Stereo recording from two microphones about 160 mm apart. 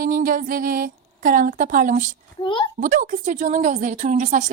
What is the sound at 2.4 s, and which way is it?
Speech, 30° left (ahead or behind).